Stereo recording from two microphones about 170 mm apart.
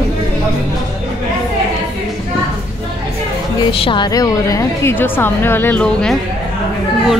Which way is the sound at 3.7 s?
30° left (ahead or behind).